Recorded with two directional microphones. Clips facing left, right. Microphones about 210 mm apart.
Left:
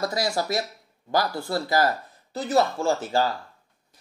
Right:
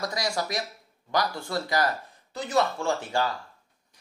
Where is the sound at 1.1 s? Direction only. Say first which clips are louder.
Left 3 dB; 35° left (ahead or behind).